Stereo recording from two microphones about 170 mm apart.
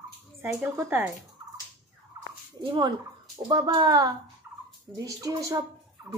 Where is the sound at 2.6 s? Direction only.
25° right (ahead or behind).